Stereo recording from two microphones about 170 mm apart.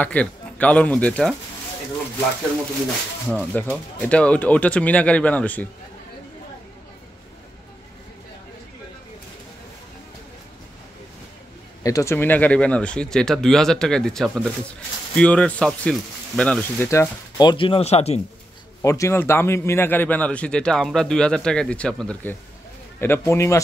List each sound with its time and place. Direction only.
0.0 s a man's voice: 10° left (ahead or behind)
3.3 s a man's voice: 10° left (ahead or behind)
11.8 s a man's voice: 20° left (ahead or behind)
17.4 s speech: 30° left (ahead or behind)
18.8 s a man's voice: 15° left (ahead or behind)